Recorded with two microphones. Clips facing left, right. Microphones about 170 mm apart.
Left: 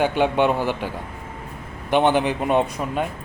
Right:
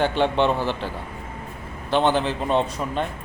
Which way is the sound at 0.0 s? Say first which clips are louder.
Left 1 dB; 10° left (ahead or behind).